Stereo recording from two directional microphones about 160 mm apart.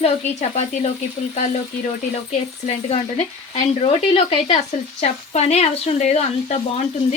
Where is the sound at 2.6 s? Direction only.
40° left (ahead or behind).